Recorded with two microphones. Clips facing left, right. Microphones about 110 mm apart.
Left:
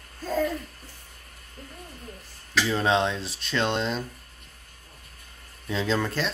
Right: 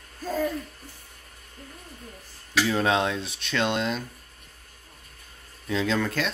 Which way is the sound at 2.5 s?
5° right (ahead or behind).